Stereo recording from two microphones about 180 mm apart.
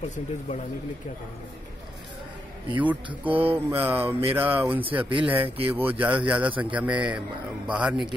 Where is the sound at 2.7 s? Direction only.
10° right (ahead or behind).